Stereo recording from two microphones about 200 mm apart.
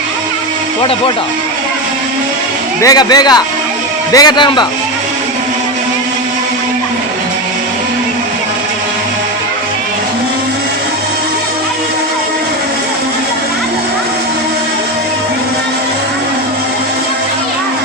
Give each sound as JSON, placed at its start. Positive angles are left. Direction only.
{"t": 2.8, "sound": "speech", "side_deg": 20}